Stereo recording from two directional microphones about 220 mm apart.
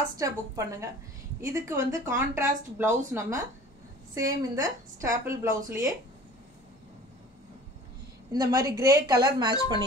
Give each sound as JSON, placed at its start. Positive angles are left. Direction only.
{"t": 0.2, "sound": "a woman's voice", "side_deg": -15}
{"t": 8.3, "sound": "a woman's voice", "side_deg": -15}